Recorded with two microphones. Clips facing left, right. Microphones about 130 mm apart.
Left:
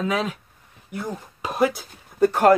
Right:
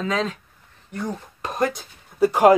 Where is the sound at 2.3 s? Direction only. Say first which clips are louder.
Right 2 dB; 10° right (ahead or behind).